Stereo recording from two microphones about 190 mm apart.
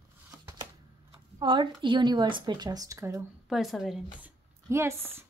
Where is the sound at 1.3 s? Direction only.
25° right (ahead or behind).